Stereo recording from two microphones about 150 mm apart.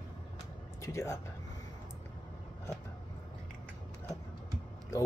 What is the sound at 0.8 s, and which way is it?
Speech, 20° left (ahead or behind).